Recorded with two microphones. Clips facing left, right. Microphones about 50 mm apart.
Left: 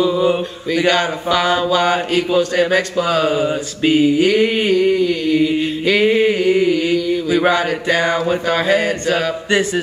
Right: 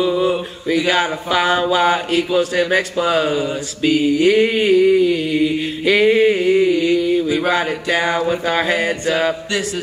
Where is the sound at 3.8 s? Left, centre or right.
Left.